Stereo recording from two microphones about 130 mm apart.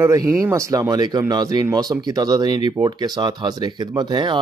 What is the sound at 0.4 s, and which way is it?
Speech, 25° right (ahead or behind).